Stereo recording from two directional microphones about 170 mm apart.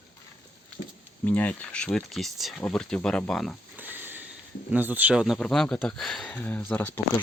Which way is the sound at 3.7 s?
10° right (ahead or behind).